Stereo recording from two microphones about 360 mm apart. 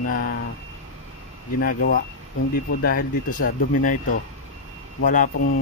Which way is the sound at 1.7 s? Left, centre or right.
Left.